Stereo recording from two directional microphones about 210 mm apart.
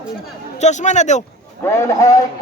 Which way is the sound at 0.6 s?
35° left (ahead or behind).